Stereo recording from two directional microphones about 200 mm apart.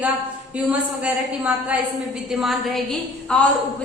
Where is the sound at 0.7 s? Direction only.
5° right (ahead or behind).